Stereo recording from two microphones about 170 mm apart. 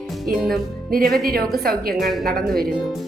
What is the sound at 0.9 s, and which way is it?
A woman's voice, 60° right (ahead or behind).